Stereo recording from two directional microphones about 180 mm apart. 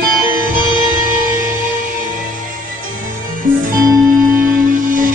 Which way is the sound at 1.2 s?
50° right (ahead or behind).